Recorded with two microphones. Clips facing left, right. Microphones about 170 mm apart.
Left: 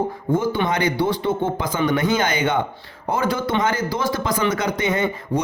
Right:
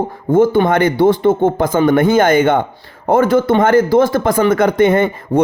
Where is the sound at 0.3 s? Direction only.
50° right (ahead or behind).